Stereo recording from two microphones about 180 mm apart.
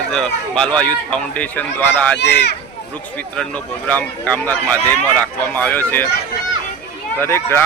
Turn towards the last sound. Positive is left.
turn(degrees=15)  # may be behind; listen again after turning